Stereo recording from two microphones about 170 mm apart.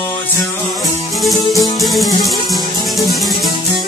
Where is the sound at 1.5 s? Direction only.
20° left (ahead or behind).